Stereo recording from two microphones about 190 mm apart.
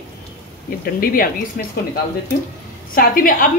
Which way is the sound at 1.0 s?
50° left (ahead or behind).